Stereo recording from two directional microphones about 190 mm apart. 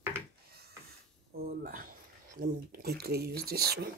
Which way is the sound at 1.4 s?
50° right (ahead or behind).